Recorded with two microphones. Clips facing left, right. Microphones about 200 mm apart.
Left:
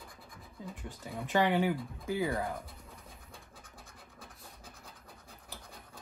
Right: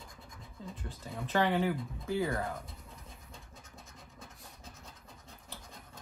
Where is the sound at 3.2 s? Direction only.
30° left (ahead or behind).